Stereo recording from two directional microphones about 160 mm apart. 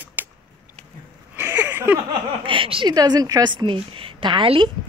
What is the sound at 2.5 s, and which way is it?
A woman's voice, 35° right (ahead or behind).